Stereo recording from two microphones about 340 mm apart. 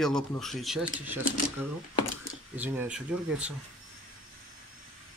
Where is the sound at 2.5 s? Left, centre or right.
Centre.